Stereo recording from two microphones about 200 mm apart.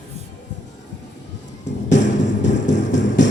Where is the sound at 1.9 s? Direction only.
35° left (ahead or behind).